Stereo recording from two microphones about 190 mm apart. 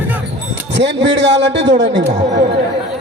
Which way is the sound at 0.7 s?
70° right (ahead or behind).